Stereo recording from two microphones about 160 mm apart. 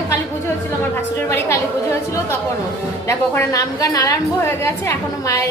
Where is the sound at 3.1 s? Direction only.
20° left (ahead or behind).